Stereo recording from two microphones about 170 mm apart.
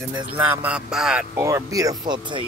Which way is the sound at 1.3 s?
15° right (ahead or behind).